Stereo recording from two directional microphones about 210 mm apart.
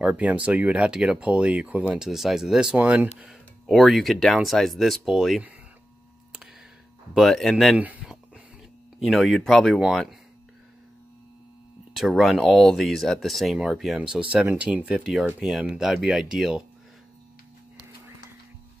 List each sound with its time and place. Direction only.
0.0 s speech: 5° right (ahead or behind)
7.2 s speech: centre (ahead or behind)
11.9 s speech: centre (ahead or behind)